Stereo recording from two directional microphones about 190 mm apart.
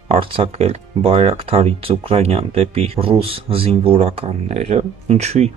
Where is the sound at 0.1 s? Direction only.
30° right (ahead or behind).